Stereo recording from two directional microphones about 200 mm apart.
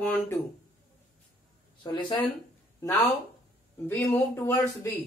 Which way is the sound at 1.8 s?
25° left (ahead or behind).